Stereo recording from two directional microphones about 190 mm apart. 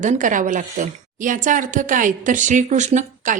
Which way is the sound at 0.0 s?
40° right (ahead or behind).